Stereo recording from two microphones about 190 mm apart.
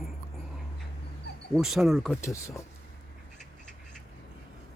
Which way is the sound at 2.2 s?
15° left (ahead or behind).